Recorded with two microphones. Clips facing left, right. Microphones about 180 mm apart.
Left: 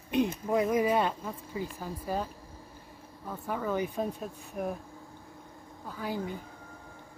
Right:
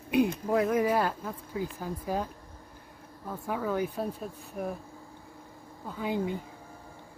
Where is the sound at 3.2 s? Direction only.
5° right (ahead or behind).